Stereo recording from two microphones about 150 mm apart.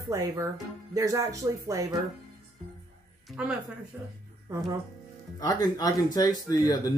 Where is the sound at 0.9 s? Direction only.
20° right (ahead or behind).